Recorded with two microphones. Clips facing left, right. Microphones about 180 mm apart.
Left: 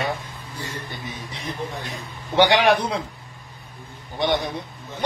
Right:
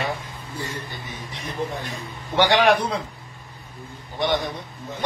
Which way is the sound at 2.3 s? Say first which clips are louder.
Left 1 dB; 15° left (ahead or behind).